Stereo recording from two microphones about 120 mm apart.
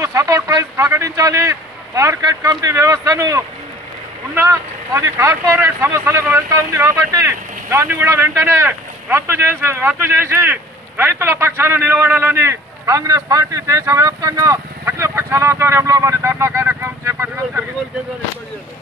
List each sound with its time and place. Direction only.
0.0 s speech: 25° right (ahead or behind)